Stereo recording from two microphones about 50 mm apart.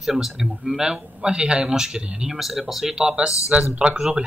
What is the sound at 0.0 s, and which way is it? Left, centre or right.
Speech, centre.